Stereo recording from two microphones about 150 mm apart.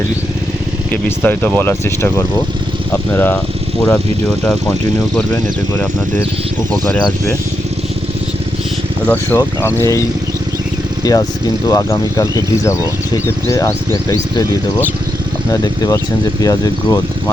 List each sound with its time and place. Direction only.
0.9 s speech: 10° left (ahead or behind)
9.0 s speech: 15° left (ahead or behind)
15.4 s speech: 25° left (ahead or behind)